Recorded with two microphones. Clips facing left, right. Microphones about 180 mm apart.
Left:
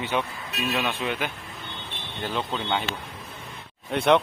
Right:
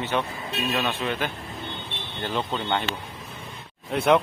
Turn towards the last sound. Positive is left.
turn(degrees=0)  # may be behind; listen again after turning